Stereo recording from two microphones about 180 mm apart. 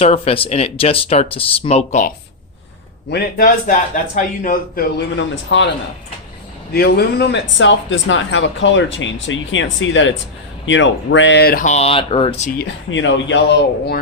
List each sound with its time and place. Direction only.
0.0 s speech: 35° left (ahead or behind)
3.1 s speech: 60° left (ahead or behind); by 5.6 s 90° left
6.7 s speech: 60° left (ahead or behind)
11.6 s speech: 35° left (ahead or behind)
12.5 s speech: 90° left; by 14.0 s 70° left (ahead or behind)